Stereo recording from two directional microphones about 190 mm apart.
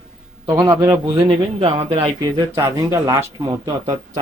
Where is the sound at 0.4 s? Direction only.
15° right (ahead or behind).